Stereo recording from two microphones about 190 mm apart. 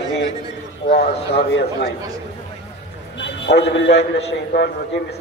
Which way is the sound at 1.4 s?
60° left (ahead or behind).